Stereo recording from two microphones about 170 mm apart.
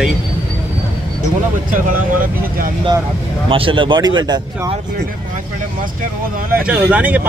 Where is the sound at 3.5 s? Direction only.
30° right (ahead or behind).